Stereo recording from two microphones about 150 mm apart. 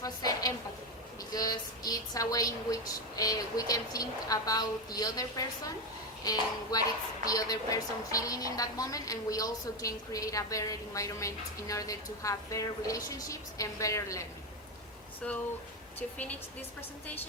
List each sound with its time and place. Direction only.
0.0 s a woman's voice: 25° left (ahead or behind)
16.0 s a woman's voice: 10° left (ahead or behind)